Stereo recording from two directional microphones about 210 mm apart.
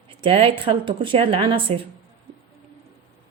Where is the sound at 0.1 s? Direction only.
25° right (ahead or behind).